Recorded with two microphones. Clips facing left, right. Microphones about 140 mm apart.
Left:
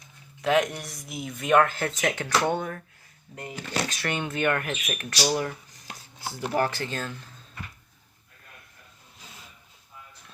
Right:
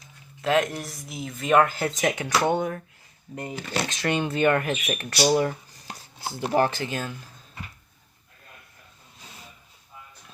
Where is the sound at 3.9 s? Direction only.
25° right (ahead or behind); by 7.1 s 10° right (ahead or behind).